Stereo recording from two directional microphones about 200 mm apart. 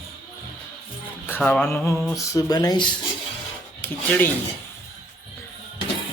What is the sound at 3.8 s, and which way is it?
Mantra, 10° left (ahead or behind).